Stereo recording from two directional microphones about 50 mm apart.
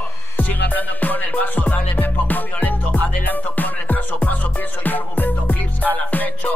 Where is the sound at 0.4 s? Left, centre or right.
Left.